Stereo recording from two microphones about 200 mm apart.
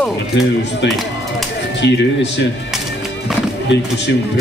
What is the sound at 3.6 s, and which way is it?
Speech, 60° left (ahead or behind).